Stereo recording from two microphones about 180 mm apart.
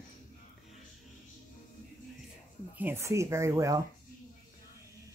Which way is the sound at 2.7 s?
10° right (ahead or behind).